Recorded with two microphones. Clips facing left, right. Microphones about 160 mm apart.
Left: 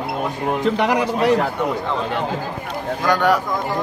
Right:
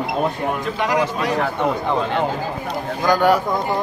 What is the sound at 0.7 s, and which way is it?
Speech, 65° left (ahead or behind).